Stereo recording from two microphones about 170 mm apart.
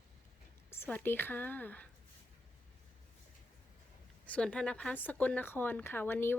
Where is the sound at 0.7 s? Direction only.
10° left (ahead or behind).